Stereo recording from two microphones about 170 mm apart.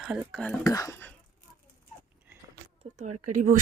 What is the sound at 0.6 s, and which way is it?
Speech, 20° left (ahead or behind).